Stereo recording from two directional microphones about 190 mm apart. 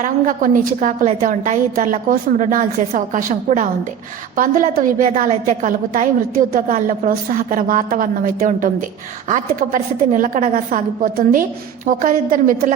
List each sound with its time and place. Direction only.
0.0 s a woman's voice: 45° right (ahead or behind)